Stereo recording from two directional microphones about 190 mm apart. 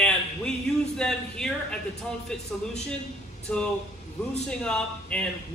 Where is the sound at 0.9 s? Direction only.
5° left (ahead or behind).